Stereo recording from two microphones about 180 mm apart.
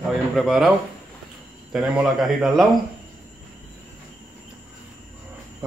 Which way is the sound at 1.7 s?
5° right (ahead or behind).